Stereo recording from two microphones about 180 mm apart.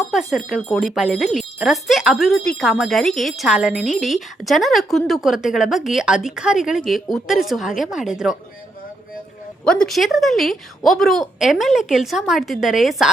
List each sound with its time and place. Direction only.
0.0 s speech: centre (ahead or behind)
9.6 s speech: 5° left (ahead or behind)